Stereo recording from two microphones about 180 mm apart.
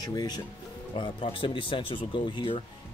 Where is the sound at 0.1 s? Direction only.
20° left (ahead or behind).